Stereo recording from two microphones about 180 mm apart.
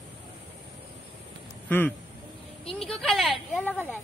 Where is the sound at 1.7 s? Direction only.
10° left (ahead or behind).